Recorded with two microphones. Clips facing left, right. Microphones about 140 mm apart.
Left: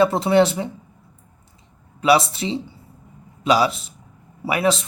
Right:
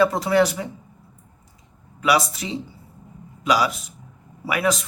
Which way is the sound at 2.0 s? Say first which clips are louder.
Left 4 dB; 25° left (ahead or behind).